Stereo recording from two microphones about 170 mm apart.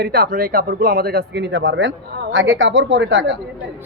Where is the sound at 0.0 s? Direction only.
60° right (ahead or behind).